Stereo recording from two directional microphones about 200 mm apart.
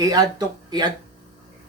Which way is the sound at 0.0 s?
20° right (ahead or behind).